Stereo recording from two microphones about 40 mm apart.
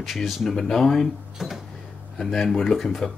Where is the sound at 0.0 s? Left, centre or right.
Centre.